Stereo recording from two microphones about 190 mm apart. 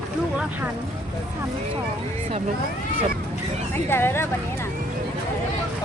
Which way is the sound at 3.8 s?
10° left (ahead or behind).